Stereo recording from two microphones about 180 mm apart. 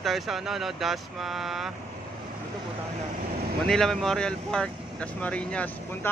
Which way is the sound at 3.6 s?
Centre (ahead or behind).